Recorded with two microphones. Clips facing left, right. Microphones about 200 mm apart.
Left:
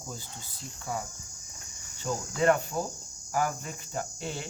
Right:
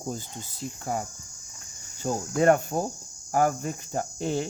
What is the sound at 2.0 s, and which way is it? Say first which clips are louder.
Cricket: right 4 dB; 50° right (ahead or behind).